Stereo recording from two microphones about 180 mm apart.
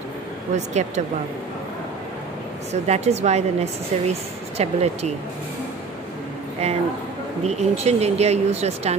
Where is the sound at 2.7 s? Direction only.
40° right (ahead or behind).